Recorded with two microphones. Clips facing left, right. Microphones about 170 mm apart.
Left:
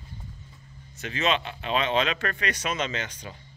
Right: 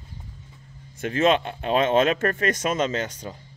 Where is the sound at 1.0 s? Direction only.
50° right (ahead or behind).